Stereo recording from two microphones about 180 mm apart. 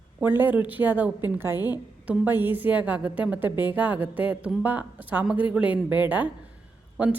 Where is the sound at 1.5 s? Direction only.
20° left (ahead or behind).